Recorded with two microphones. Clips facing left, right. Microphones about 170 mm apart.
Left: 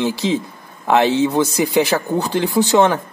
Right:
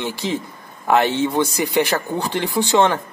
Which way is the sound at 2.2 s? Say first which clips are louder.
Left 4 dB; 20° left (ahead or behind).